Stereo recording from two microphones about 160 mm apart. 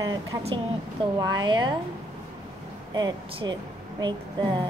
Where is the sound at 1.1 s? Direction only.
30° right (ahead or behind).